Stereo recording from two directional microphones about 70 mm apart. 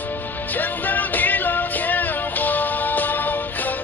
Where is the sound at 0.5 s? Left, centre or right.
Left.